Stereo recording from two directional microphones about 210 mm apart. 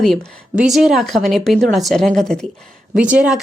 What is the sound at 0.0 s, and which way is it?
A woman's voice, centre (ahead or behind).